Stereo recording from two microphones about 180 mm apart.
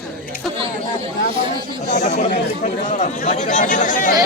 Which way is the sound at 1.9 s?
40° left (ahead or behind).